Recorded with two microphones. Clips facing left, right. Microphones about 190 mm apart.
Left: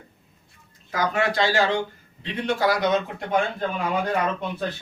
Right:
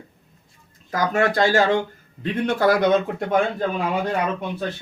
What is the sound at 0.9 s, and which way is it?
Speech, 45° right (ahead or behind).